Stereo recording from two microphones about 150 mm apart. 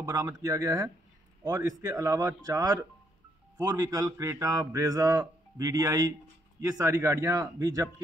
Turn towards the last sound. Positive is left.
turn(degrees=-25)  # may be behind; listen again after turning